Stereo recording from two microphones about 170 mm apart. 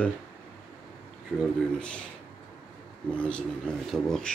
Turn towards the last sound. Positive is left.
turn(degrees=5)  # may be behind; listen again after turning